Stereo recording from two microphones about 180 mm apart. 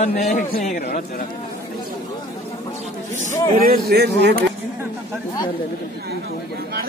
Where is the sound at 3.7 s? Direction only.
60° right (ahead or behind).